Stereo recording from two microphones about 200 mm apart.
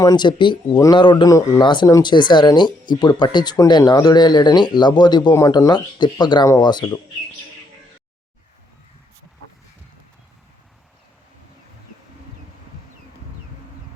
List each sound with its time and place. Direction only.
0.0 s speech: 20° left (ahead or behind)